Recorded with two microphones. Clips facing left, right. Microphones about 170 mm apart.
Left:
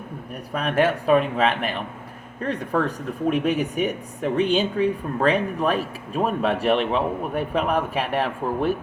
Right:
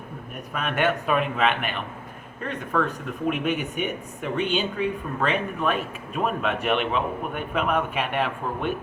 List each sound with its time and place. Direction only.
0.5 s speech: 35° left (ahead or behind)